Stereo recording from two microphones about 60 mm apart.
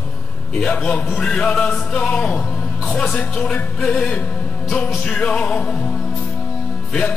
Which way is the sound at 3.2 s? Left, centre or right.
Centre.